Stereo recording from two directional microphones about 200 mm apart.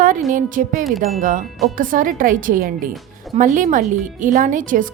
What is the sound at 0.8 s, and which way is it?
Chime, centre (ahead or behind).